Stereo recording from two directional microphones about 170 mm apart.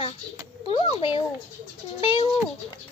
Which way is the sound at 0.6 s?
30° left (ahead or behind).